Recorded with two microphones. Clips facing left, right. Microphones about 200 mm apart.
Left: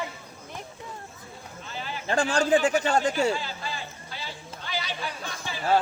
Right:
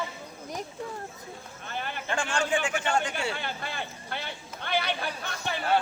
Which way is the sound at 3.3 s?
60° right (ahead or behind).